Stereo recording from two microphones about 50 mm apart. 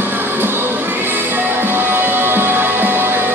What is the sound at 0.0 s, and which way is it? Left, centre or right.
Music, right.